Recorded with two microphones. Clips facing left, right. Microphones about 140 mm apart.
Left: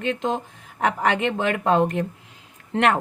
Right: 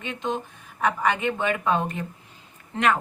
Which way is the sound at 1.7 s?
70° left (ahead or behind).